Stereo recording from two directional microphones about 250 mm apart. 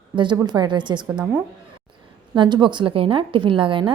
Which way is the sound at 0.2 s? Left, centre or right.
Centre.